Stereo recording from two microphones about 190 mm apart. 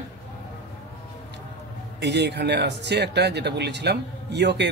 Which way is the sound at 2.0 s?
60° right (ahead or behind).